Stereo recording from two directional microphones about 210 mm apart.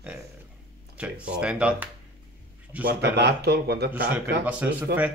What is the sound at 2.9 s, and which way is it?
Speech, 50° right (ahead or behind).